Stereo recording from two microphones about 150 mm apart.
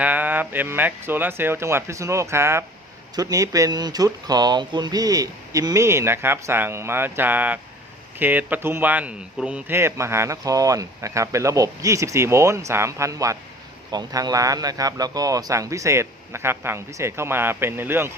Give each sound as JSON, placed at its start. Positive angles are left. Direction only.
{"t": 0.0, "sound": "speech", "side_deg": -10}